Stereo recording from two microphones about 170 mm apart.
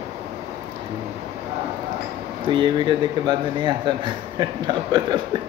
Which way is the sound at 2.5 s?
30° right (ahead or behind).